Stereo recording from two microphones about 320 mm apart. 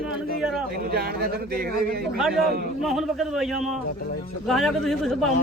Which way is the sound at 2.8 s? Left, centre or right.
Centre.